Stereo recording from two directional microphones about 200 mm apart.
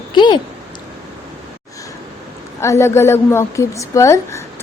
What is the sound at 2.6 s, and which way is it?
A woman's voice, 15° left (ahead or behind).